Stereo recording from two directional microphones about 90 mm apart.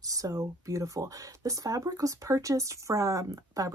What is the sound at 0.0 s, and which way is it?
Speech, 40° right (ahead or behind).